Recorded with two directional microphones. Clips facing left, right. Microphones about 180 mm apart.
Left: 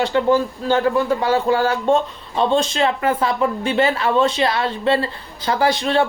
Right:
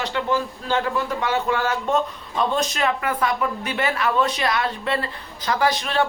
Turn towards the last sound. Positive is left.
turn(degrees=30)  # may be behind; listen again after turning